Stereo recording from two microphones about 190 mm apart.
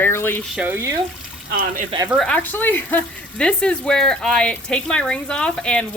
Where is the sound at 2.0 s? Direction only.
Centre (ahead or behind).